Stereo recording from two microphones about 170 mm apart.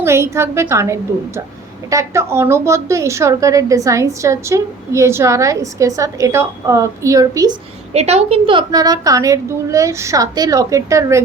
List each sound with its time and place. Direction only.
0.0 s a woman's voice: 15° right (ahead or behind)
7.9 s a woman's voice: 40° right (ahead or behind); by 11.2 s 20° right (ahead or behind)